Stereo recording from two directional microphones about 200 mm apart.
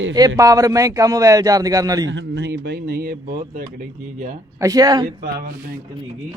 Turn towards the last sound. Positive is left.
turn(degrees=-50)  # may be behind; listen again after turning